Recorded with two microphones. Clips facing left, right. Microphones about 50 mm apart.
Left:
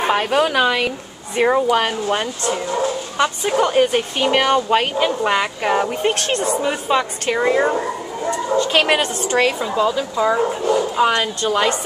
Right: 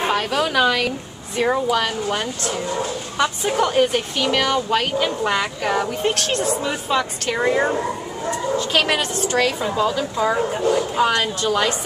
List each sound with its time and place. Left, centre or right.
0.1 s speech: centre
3.2 s a woman's voice: centre
3.9 s a woman's voice: left
7.3 s speech: centre
8.8 s speech: left
9.9 s speech: centre
11.0 s a woman's voice: centre